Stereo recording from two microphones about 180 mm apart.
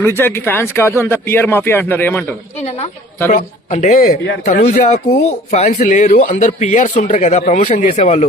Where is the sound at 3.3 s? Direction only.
45° left (ahead or behind).